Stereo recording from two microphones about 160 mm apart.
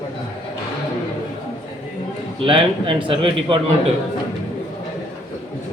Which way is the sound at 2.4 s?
30° right (ahead or behind).